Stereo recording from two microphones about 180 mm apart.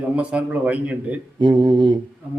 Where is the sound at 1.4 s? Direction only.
25° right (ahead or behind).